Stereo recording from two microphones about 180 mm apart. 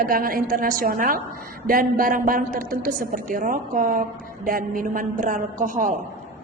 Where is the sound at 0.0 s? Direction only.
50° right (ahead or behind).